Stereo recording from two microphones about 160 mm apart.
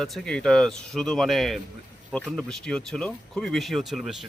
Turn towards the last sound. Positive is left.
turn(degrees=0)  # may be behind; listen again after turning